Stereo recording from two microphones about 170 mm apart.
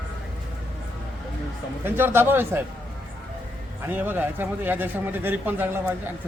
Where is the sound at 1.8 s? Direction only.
15° right (ahead or behind).